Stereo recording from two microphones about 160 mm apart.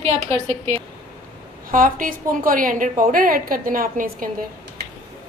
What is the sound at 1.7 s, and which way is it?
A woman's voice, 60° right (ahead or behind).